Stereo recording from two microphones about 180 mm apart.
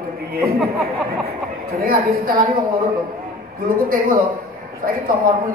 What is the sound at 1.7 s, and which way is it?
A man's voice, 55° right (ahead or behind).